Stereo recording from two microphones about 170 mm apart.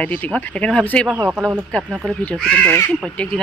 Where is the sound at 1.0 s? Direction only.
10° right (ahead or behind).